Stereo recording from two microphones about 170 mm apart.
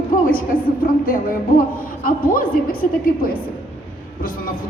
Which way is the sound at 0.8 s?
60° left (ahead or behind).